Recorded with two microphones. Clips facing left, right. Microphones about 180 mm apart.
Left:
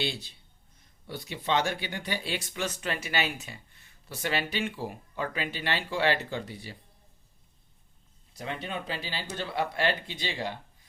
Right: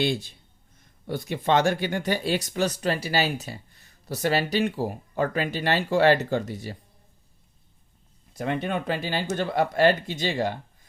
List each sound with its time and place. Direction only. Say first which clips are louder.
0.0 s speech: right 8 dB; 50° right (ahead or behind)
8.3 s speech: right 8 dB; 50° right (ahead or behind)